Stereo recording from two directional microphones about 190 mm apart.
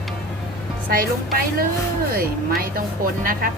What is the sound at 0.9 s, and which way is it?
Speech, 50° right (ahead or behind).